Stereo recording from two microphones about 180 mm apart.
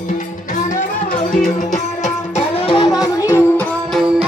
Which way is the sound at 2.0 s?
35° left (ahead or behind).